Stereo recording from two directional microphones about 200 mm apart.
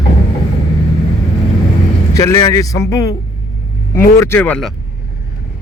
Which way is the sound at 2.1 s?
15° left (ahead or behind).